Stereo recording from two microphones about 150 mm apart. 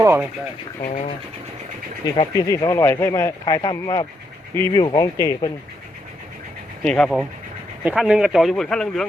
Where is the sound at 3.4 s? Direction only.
30° left (ahead or behind).